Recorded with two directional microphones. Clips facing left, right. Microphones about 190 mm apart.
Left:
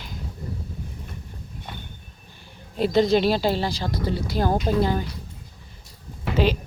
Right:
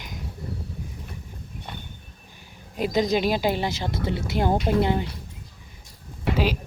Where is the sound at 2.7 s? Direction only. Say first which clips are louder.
Left 4 dB; 10° right (ahead or behind).